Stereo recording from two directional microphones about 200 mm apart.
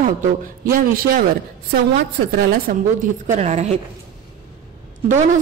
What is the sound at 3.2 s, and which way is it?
Speech, 35° right (ahead or behind).